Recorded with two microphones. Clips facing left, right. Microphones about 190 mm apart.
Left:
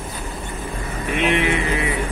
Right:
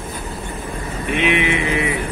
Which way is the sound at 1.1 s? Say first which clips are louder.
Right 1 dB; 40° left (ahead or behind).